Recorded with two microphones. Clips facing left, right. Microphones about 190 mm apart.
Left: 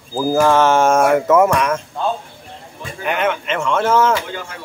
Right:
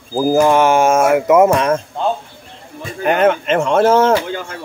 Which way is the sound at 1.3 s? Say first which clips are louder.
Right 3 dB; 25° right (ahead or behind).